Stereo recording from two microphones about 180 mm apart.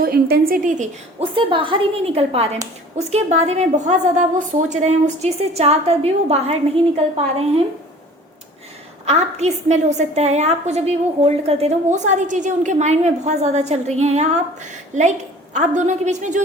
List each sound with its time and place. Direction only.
0.0 s a woman's voice: 55° right (ahead or behind)
1.4 s a woman's voice: 30° right (ahead or behind)
9.0 s a woman's voice: 40° right (ahead or behind)